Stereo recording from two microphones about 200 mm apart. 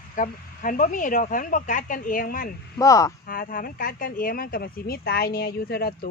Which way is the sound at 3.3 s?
45° left (ahead or behind).